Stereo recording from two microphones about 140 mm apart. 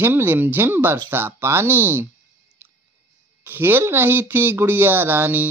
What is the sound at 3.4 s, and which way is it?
Speech, 15° right (ahead or behind).